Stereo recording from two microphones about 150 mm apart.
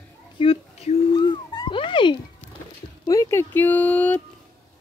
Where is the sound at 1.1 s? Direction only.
30° left (ahead or behind); by 4.2 s 10° left (ahead or behind).